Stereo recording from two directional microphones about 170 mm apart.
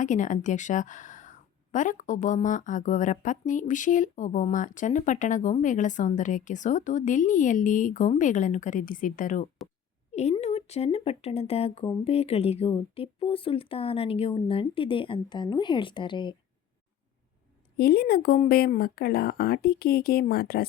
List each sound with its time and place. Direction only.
0.0 s a woman's voice: 45° left (ahead or behind); by 16.3 s 30° left (ahead or behind)
17.7 s speech: 65° left (ahead or behind)